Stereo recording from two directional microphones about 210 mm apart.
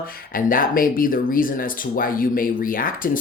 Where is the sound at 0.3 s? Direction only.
40° left (ahead or behind).